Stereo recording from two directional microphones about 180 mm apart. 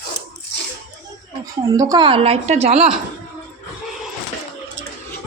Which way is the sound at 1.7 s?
20° right (ahead or behind).